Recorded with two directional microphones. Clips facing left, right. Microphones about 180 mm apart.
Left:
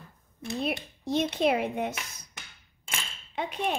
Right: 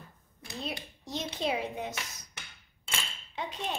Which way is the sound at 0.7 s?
60° left (ahead or behind).